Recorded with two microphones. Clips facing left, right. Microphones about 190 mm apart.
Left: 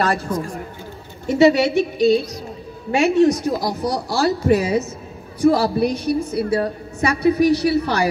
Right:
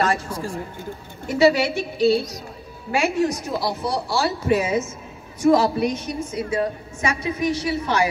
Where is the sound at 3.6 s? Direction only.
35° left (ahead or behind).